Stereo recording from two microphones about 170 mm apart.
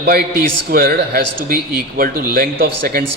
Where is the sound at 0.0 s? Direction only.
65° right (ahead or behind).